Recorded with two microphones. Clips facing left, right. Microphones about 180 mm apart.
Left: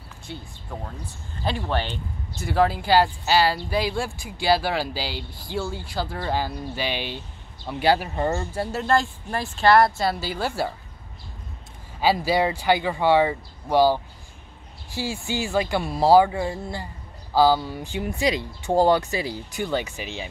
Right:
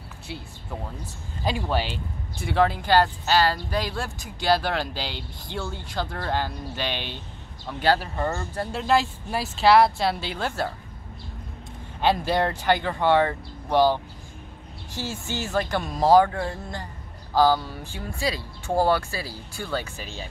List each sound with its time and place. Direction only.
0.3 s speech: 5° right (ahead or behind)
2.4 s speech: 5° left (ahead or behind)
8.7 s speech: 5° right (ahead or behind)
12.0 s speech: 5° left (ahead or behind)